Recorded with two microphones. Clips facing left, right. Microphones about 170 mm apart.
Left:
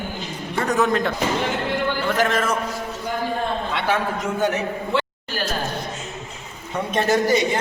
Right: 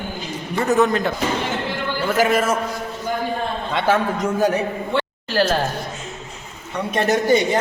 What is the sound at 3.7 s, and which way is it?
Speech, 45° right (ahead or behind).